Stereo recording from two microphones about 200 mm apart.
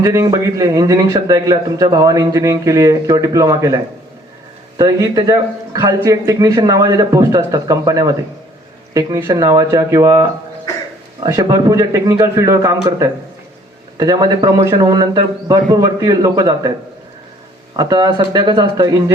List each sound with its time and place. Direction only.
0.0 s a man's voice: 15° right (ahead or behind)
4.8 s a man's voice: 15° right (ahead or behind)
17.7 s a man's voice: 20° right (ahead or behind)